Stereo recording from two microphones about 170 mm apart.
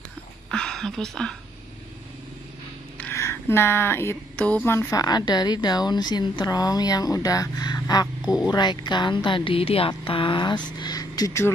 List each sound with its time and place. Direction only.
0.5 s speech: 5° left (ahead or behind)
3.0 s a sound: 15° left (ahead or behind)
4.6 s a woman's voice: 15° left (ahead or behind)